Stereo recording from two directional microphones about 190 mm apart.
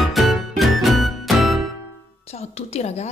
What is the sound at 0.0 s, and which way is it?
Music, centre (ahead or behind).